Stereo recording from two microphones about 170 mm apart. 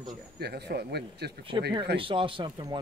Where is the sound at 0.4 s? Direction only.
70° right (ahead or behind).